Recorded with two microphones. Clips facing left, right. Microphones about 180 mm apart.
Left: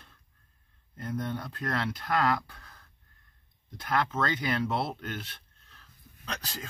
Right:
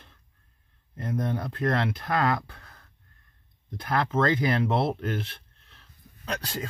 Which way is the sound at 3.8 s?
30° right (ahead or behind).